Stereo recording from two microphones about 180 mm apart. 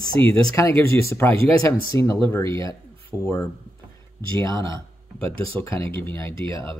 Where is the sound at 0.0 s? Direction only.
15° left (ahead or behind).